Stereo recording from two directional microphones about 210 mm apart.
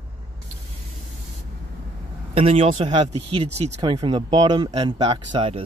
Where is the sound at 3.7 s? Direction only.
20° right (ahead or behind).